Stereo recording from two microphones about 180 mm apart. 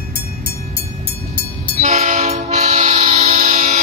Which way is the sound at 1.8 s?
40° right (ahead or behind).